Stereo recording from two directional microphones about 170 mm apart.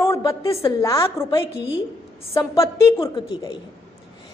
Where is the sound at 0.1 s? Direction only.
15° left (ahead or behind).